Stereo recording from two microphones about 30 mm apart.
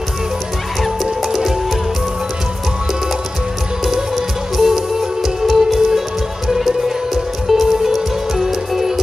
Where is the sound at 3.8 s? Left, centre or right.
Centre.